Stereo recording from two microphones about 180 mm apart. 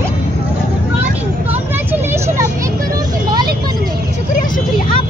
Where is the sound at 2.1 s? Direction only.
15° right (ahead or behind).